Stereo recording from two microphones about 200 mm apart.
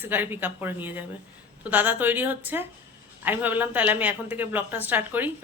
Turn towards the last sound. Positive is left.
turn(degrees=-10)  # may be behind; listen again after turning